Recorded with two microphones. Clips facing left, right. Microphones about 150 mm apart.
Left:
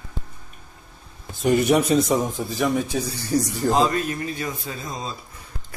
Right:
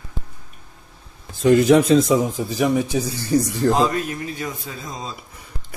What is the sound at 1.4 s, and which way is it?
Speech, 90° right.